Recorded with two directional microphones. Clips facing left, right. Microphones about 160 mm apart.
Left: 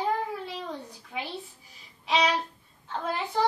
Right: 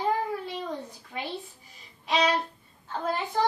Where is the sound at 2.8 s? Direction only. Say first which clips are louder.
Right 1 dB; centre (ahead or behind).